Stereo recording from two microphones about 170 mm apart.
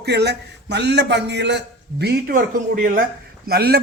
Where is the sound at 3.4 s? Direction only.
65° right (ahead or behind).